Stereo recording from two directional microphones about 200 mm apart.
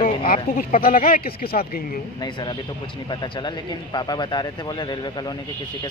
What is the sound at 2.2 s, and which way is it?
A man's voice, 20° left (ahead or behind).